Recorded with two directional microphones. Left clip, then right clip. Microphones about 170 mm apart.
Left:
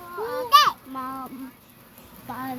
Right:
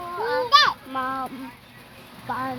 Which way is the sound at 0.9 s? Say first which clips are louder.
Right 6 dB; 30° right (ahead or behind).